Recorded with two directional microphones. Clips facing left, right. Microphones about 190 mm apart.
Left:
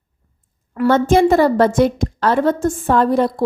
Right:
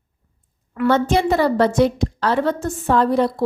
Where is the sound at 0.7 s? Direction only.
45° left (ahead or behind).